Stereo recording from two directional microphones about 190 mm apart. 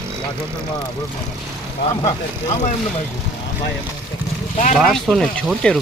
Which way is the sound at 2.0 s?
35° left (ahead or behind).